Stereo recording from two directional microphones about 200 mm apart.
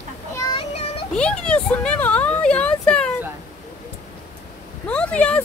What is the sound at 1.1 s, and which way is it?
Speech, 5° left (ahead or behind).